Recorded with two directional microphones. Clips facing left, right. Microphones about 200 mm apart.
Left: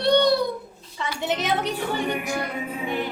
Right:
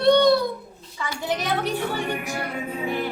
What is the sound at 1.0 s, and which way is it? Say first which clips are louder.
Speech: left 1 dB; 20° left (ahead or behind).